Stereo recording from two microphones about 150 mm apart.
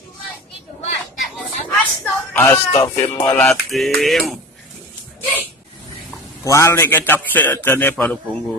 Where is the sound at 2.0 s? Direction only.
15° left (ahead or behind).